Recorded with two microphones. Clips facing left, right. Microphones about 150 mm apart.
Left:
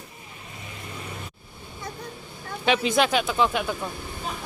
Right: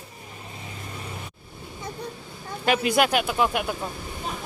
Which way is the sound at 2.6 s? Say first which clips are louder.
Even; 5° right (ahead or behind).